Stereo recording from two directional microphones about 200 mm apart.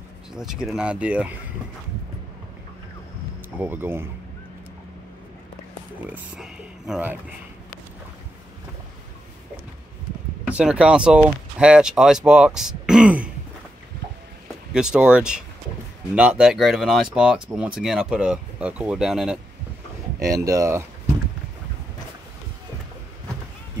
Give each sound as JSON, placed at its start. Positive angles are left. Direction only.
{"t": 0.3, "sound": "speech", "side_deg": 0}
{"t": 3.5, "sound": "speech", "side_deg": -10}
{"t": 6.0, "sound": "speech", "side_deg": -5}
{"t": 10.4, "sound": "speech", "side_deg": -5}
{"t": 14.7, "sound": "speech", "side_deg": -5}
{"t": 20.3, "sound": "speech", "side_deg": -15}